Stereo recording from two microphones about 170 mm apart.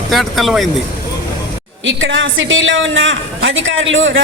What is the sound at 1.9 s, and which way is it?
A man's voice, 90° right.